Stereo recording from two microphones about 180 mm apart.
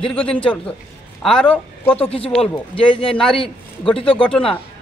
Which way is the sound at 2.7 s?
30° left (ahead or behind).